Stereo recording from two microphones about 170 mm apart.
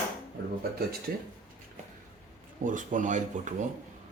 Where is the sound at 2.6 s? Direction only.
50° right (ahead or behind).